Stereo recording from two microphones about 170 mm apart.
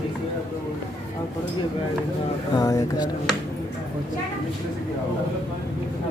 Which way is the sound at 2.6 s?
20° left (ahead or behind).